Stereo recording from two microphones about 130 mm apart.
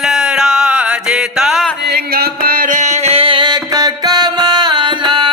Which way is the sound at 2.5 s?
90° right.